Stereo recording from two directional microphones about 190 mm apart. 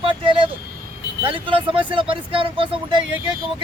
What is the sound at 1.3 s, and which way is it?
Speech, 25° right (ahead or behind).